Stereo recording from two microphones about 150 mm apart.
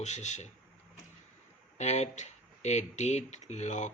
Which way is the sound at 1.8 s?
50° left (ahead or behind).